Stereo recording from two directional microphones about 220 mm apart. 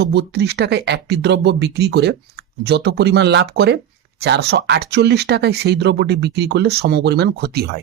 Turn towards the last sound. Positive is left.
turn(degrees=-45)  # may be behind; listen again after turning